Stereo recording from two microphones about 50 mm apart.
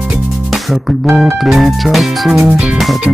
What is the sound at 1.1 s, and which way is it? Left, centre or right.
Music, centre.